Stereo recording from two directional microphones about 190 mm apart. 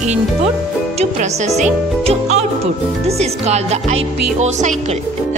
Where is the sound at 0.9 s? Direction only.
35° right (ahead or behind).